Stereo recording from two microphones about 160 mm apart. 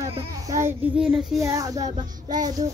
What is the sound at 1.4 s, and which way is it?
Speech, 20° right (ahead or behind).